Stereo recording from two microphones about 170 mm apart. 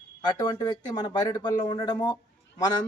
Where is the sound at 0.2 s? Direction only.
25° left (ahead or behind).